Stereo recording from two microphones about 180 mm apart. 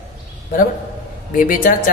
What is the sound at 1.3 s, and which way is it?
Speech, 50° left (ahead or behind).